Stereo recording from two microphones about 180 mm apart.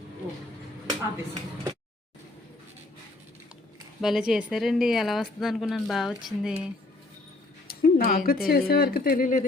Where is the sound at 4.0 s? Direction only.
Centre (ahead or behind).